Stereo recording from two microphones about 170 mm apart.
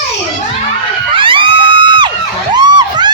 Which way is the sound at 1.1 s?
30° right (ahead or behind).